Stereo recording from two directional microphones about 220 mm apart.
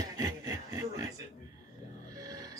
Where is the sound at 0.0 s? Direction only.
15° right (ahead or behind).